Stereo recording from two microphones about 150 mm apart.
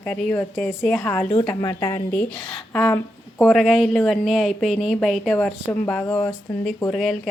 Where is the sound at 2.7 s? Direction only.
10° left (ahead or behind).